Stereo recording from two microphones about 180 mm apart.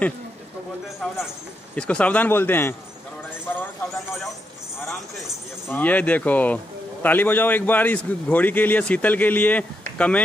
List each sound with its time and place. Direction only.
1.8 s a man's voice: 5° left (ahead or behind)
3.4 s a sound: 10° left (ahead or behind)
5.7 s a man's voice: 10° left (ahead or behind)